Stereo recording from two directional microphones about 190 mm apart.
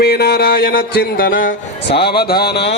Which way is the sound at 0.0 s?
55° left (ahead or behind).